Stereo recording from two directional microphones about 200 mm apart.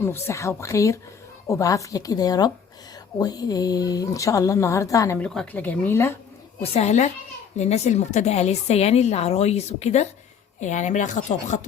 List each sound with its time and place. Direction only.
0.0 s speech: 10° left (ahead or behind)
6.6 s a woman's voice: 30° left (ahead or behind)